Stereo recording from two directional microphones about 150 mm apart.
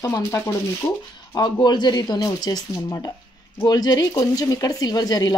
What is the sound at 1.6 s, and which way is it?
Speech, 30° left (ahead or behind).